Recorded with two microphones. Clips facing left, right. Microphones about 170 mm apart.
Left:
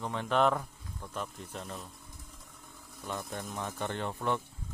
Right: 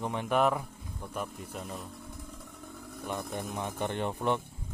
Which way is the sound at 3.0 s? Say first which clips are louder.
Right 3 dB; 15° right (ahead or behind).